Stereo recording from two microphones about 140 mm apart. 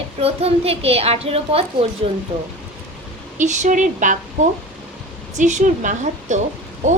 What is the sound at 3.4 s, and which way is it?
A woman's voice, 65° right (ahead or behind).